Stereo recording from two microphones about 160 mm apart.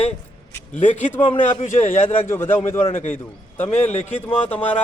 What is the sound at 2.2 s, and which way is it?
Speech, 15° left (ahead or behind).